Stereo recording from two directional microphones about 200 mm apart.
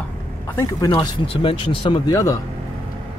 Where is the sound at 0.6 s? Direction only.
20° left (ahead or behind).